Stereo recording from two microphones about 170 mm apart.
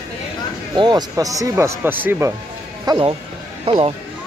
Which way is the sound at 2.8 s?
25° right (ahead or behind).